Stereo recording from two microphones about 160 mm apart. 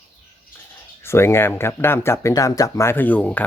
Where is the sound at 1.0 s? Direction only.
15° left (ahead or behind).